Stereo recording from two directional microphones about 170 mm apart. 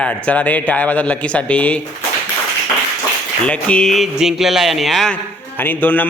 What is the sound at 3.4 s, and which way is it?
Speech, 5° left (ahead or behind).